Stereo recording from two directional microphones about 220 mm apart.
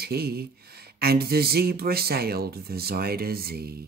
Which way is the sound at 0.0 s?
45° right (ahead or behind).